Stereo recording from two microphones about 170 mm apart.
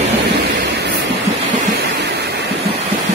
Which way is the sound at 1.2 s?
40° right (ahead or behind).